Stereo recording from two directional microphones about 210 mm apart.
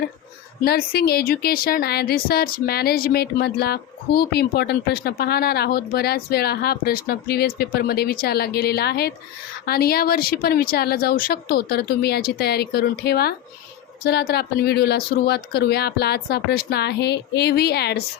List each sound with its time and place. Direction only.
0.6 s a woman's voice: 45° left (ahead or behind)